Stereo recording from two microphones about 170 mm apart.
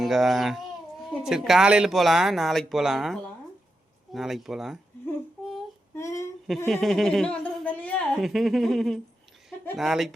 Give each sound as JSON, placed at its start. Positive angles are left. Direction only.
{"t": 0.0, "sound": "speech", "side_deg": 0}
{"t": 6.0, "sound": "a sound", "side_deg": 20}
{"t": 6.7, "sound": "speech", "side_deg": 0}